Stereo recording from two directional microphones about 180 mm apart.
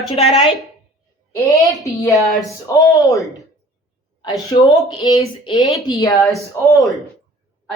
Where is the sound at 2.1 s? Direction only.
Centre (ahead or behind).